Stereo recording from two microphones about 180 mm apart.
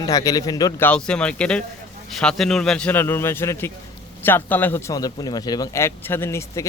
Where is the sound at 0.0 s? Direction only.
20° left (ahead or behind).